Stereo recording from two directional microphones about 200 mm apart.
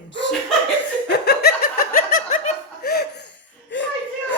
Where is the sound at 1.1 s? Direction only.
55° left (ahead or behind).